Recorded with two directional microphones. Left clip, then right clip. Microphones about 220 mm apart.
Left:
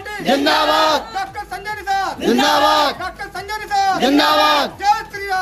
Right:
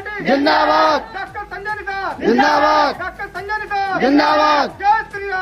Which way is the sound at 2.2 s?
15° left (ahead or behind).